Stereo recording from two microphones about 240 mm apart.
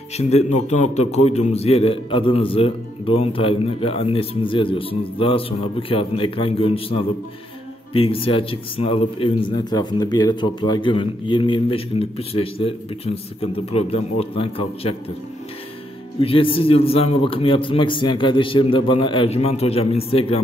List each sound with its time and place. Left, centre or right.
0.2 s speech: left
16.2 s speech: left